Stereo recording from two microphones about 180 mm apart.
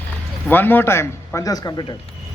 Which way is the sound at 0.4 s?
10° left (ahead or behind).